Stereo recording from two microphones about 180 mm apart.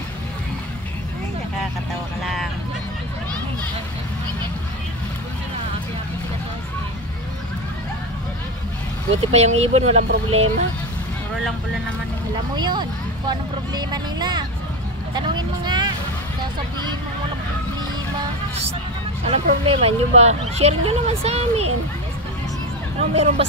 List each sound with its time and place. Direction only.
9.3 s speech: 35° right (ahead or behind)
12.5 s speech: 25° right (ahead or behind)
19.2 s speech: 35° right (ahead or behind)
22.9 s speech: 35° right (ahead or behind)